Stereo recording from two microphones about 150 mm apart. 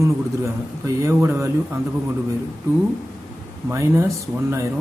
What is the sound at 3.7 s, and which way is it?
Speech, 20° right (ahead or behind).